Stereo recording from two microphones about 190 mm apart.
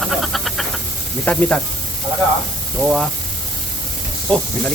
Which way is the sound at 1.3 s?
10° left (ahead or behind).